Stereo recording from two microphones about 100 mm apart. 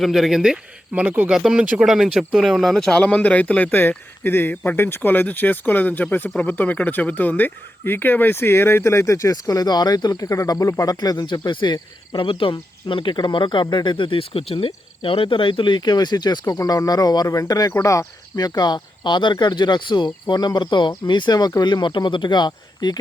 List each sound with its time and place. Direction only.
0.0 s speech: 5° right (ahead or behind)
1.5 s a man's voice: 5° right (ahead or behind); by 23.0 s 45° left (ahead or behind)